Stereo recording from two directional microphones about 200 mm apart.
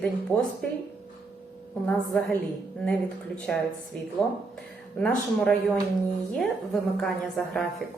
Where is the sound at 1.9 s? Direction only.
5° left (ahead or behind).